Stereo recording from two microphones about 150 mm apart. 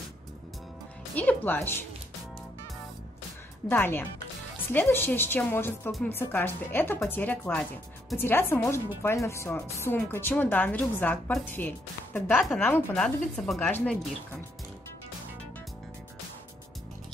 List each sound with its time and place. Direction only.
1.1 s a woman's voice: 10° left (ahead or behind)
3.6 s a woman's voice: 15° left (ahead or behind)
13.0 s speech: centre (ahead or behind)